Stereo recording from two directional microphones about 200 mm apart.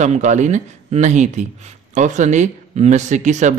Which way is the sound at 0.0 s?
35° right (ahead or behind).